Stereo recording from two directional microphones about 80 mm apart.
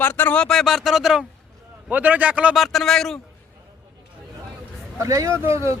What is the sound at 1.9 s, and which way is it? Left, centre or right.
Speech, right.